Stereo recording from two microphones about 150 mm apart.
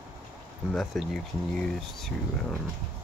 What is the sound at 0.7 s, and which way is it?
Speech, centre (ahead or behind).